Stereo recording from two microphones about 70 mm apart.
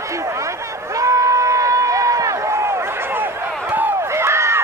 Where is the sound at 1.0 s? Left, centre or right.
Right.